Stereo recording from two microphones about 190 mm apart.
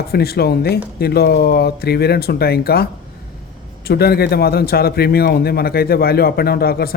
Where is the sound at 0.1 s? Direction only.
55° left (ahead or behind).